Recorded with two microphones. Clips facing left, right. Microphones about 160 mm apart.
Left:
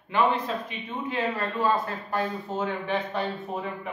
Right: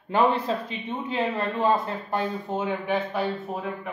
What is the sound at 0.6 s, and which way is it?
A man's voice, 25° right (ahead or behind).